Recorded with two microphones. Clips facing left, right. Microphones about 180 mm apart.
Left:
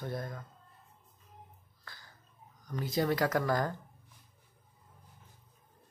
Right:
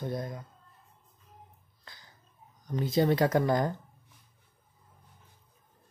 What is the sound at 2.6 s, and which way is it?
Speech, 25° right (ahead or behind).